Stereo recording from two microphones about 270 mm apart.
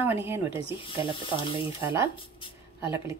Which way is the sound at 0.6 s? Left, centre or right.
Left.